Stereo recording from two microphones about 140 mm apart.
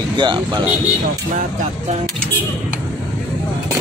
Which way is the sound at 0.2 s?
35° right (ahead or behind).